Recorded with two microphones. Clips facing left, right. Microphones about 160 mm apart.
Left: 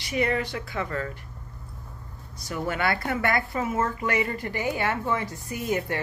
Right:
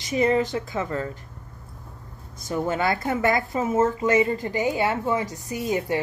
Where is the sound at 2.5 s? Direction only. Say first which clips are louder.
Right 3 dB; 25° right (ahead or behind).